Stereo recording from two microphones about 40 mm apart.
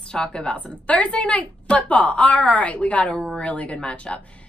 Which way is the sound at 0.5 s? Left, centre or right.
Left.